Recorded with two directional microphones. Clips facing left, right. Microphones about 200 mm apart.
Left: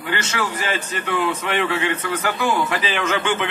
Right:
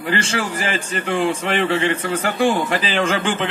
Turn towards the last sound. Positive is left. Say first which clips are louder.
# right 2 dB
turn(degrees=-30)  # may be behind; listen again after turning